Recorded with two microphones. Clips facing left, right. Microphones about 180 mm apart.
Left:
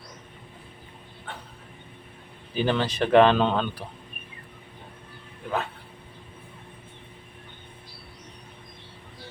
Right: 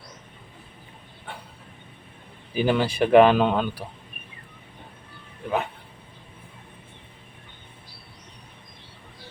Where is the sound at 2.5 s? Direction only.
10° right (ahead or behind).